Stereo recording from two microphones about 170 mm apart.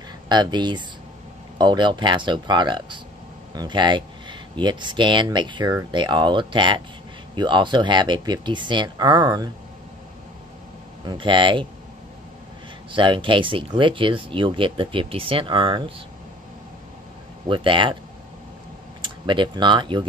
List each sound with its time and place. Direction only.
0.3 s speech: 25° right (ahead or behind)
11.1 s speech: 30° right (ahead or behind)
12.9 s speech: 30° right (ahead or behind)
17.5 s speech: 30° right (ahead or behind)
18.9 s speech: 30° right (ahead or behind)